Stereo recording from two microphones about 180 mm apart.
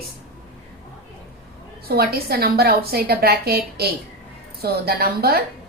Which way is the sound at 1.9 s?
60° right (ahead or behind).